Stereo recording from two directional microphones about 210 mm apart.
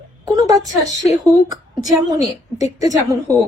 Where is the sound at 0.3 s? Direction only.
15° right (ahead or behind).